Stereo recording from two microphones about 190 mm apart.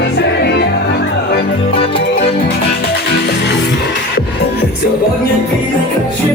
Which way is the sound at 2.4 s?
55° left (ahead or behind).